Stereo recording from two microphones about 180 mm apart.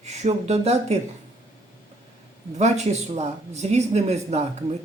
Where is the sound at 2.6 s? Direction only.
40° right (ahead or behind).